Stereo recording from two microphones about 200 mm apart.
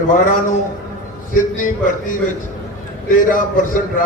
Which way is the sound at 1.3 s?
40° left (ahead or behind).